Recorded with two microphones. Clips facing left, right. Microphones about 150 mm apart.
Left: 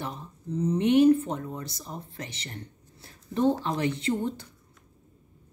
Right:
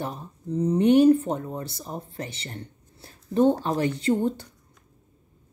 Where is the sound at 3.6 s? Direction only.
40° right (ahead or behind).